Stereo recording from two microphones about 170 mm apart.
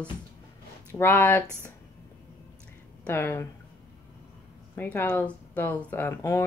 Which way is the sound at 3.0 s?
10° left (ahead or behind).